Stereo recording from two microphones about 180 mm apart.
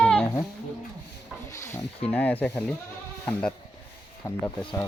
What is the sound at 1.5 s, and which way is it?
Speech, 15° left (ahead or behind).